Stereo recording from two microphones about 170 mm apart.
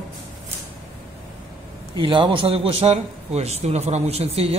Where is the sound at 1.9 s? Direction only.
30° right (ahead or behind).